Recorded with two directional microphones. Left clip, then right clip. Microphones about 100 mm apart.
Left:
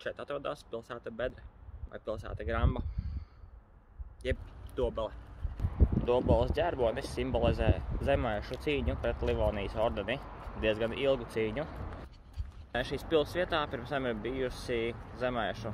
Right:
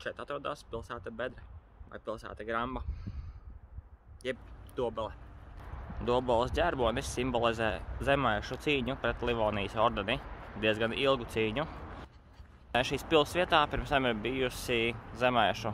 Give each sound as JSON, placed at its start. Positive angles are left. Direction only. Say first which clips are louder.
{"t": 0.0, "sound": "speech", "louder": "even", "side_deg": -25}
{"t": 4.2, "sound": "speech", "louder": "left 1 dB", "side_deg": -25}
{"t": 6.0, "sound": "speech", "louder": "even", "side_deg": -65}
{"t": 12.7, "sound": "speech", "louder": "right 3 dB", "side_deg": -90}